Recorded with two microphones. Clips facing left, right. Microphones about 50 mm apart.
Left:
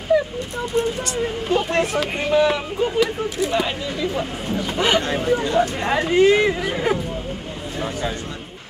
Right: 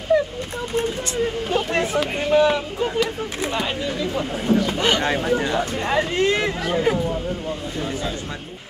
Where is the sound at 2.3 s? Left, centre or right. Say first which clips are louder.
Right 1 dB; centre.